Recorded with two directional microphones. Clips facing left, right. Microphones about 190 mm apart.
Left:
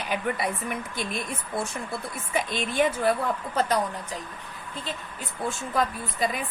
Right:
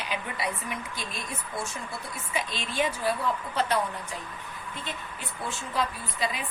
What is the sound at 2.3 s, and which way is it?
Speech, 50° left (ahead or behind).